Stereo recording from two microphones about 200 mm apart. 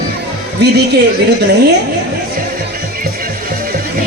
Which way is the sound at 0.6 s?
55° right (ahead or behind).